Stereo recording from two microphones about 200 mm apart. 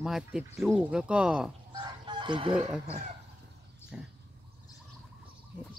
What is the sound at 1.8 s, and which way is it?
Chicken, 20° right (ahead or behind).